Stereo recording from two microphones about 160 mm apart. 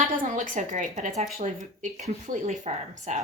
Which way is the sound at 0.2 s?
55° right (ahead or behind).